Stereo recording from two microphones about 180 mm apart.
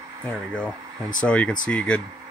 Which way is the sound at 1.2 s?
5° left (ahead or behind).